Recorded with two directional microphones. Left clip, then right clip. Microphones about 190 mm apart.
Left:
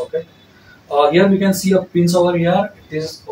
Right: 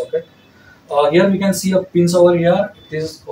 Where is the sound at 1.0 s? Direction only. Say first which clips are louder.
Even; centre (ahead or behind).